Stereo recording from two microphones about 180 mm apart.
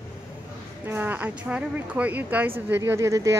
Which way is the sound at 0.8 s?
10° right (ahead or behind).